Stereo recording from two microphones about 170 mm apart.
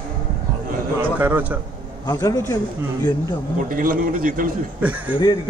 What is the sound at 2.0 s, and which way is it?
Speech, 20° left (ahead or behind).